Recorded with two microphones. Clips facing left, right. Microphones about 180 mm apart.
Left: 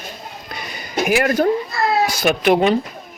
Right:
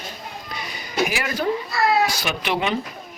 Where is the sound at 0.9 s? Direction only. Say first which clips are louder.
Left 7 dB; 55° left (ahead or behind).